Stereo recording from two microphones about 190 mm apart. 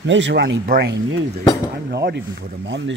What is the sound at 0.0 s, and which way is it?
Speech, 70° right (ahead or behind).